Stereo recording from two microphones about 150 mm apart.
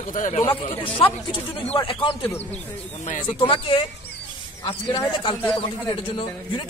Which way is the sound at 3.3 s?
35° left (ahead or behind).